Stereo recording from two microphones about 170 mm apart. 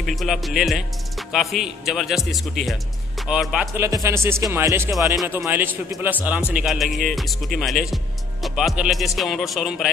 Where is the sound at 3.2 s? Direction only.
Centre (ahead or behind).